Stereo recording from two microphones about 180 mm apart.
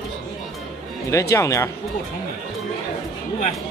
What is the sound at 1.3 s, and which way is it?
Speech, 15° left (ahead or behind).